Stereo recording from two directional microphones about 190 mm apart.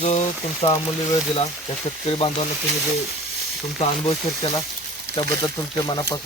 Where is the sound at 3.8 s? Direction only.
30° left (ahead or behind).